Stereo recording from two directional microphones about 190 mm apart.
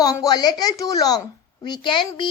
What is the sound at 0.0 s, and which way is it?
A woman's voice, 20° left (ahead or behind).